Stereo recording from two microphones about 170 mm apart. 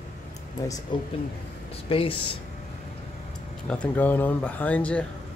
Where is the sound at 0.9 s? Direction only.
30° left (ahead or behind).